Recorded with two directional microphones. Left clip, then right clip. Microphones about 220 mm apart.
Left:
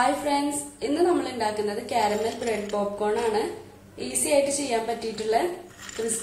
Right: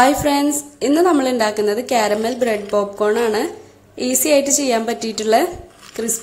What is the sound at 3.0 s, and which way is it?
A woman's voice, 40° right (ahead or behind).